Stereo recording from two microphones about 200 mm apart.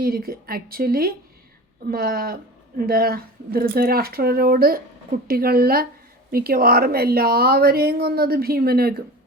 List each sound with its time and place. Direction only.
0.0 s speech: 50° right (ahead or behind)